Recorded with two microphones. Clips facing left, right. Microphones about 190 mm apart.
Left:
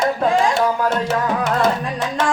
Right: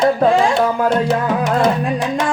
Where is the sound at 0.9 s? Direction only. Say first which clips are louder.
Right 3 dB; 15° right (ahead or behind).